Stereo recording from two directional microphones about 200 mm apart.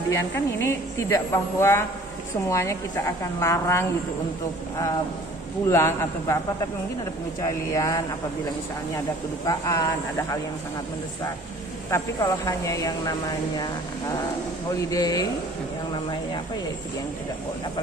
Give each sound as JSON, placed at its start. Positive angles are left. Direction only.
{"t": 0.1, "sound": "a woman's voice", "side_deg": 15}
{"t": 5.7, "sound": "a woman's voice", "side_deg": 15}
{"t": 7.4, "sound": "a woman's voice", "side_deg": 15}
{"t": 9.5, "sound": "a woman's voice", "side_deg": 15}
{"t": 11.9, "sound": "a woman's voice", "side_deg": 15}
{"t": 14.9, "sound": "speech", "side_deg": 20}